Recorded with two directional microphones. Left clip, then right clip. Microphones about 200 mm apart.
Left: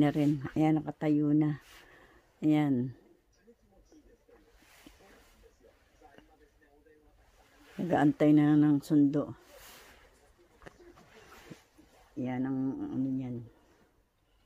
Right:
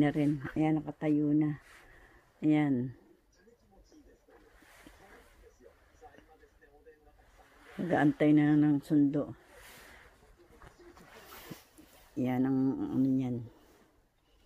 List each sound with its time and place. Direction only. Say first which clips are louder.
0.0 s speech: left 1 dB; 15° left (ahead or behind)
2.4 s speech: left 1 dB; 15° left (ahead or behind)
7.8 s speech: left 1 dB; 15° left (ahead or behind)
11.5 s dog: right 2 dB; 35° right (ahead or behind)
12.2 s speech: right 3 dB; 25° right (ahead or behind)